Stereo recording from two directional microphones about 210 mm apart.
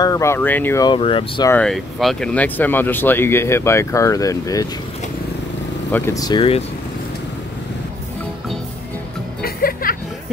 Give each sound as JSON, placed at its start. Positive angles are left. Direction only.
{"t": 0.0, "sound": "speech", "side_deg": 15}
{"t": 1.5, "sound": "speech", "side_deg": 5}
{"t": 5.9, "sound": "speech", "side_deg": 10}
{"t": 9.4, "sound": "music", "side_deg": 45}